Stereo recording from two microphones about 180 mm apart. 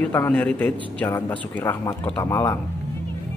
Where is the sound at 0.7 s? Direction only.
30° right (ahead or behind).